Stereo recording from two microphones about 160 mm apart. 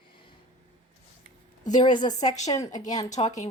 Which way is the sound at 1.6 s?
25° left (ahead or behind).